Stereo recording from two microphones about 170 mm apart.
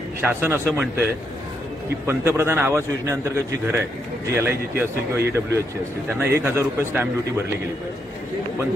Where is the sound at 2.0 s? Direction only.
15° right (ahead or behind).